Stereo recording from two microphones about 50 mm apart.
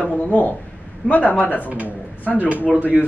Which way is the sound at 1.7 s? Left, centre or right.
Right.